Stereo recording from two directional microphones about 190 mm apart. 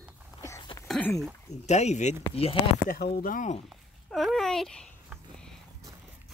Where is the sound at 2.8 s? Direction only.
55° left (ahead or behind).